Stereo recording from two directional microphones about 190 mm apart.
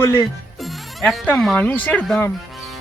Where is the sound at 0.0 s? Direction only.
15° left (ahead or behind).